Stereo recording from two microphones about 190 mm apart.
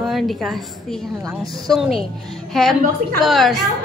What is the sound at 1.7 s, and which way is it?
A woman's voice, centre (ahead or behind).